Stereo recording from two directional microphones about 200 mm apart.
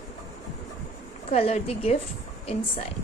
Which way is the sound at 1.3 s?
30° left (ahead or behind).